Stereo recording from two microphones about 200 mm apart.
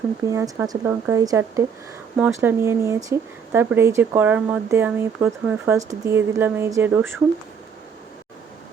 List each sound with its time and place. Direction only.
0.3 s speech: 15° right (ahead or behind)